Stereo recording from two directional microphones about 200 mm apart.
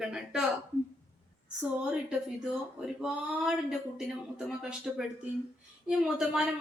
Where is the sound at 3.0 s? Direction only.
5° right (ahead or behind).